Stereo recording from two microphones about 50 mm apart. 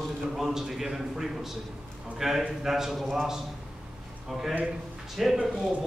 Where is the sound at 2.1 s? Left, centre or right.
Centre.